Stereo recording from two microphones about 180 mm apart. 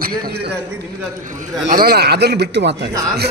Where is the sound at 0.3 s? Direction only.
65° right (ahead or behind).